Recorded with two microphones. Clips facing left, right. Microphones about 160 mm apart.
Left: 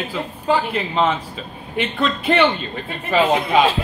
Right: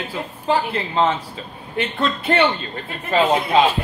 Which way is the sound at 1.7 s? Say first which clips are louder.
Left 1 dB; 15° left (ahead or behind).